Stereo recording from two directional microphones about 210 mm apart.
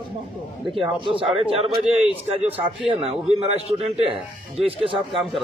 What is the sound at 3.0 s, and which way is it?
A man's voice, 30° right (ahead or behind).